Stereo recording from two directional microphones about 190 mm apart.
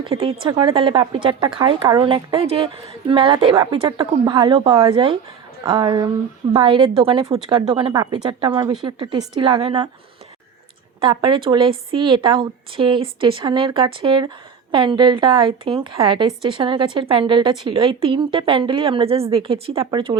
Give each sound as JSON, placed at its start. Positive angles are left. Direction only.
{"t": 0.0, "sound": "a woman's voice", "side_deg": -30}
{"t": 11.0, "sound": "a woman's voice", "side_deg": -25}